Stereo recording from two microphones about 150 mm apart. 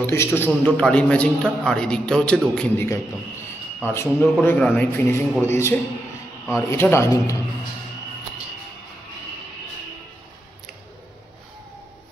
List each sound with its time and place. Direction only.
0.0 s speech: 15° left (ahead or behind)
0.5 s a man's voice: 5° left (ahead or behind)